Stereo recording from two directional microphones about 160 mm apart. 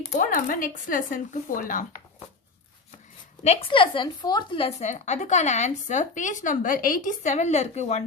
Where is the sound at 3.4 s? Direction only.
40° left (ahead or behind).